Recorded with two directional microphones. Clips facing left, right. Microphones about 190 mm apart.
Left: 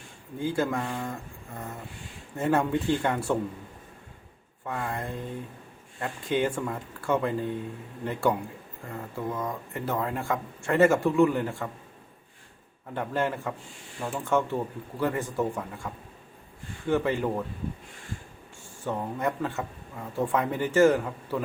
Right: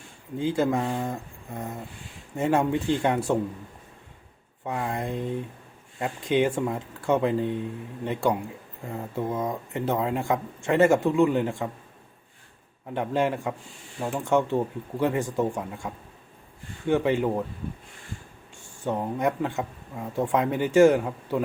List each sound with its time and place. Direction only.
0.3 s speech: 20° right (ahead or behind)
2.3 s speech: 15° right (ahead or behind)
4.6 s speech: 20° right (ahead or behind)
12.9 s speech: 15° right (ahead or behind)
16.9 s speech: 15° right (ahead or behind)
18.9 s speech: 15° right (ahead or behind)